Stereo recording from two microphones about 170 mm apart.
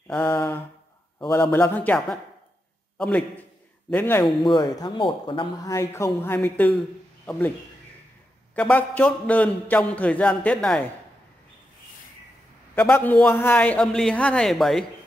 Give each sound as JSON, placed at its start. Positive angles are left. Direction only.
{"t": 1.4, "sound": "a man's voice", "side_deg": 10}
{"t": 4.2, "sound": "a man's voice", "side_deg": 0}
{"t": 4.6, "sound": "a man's voice", "side_deg": 25}
{"t": 8.5, "sound": "a man's voice", "side_deg": 10}
{"t": 12.7, "sound": "a man's voice", "side_deg": 10}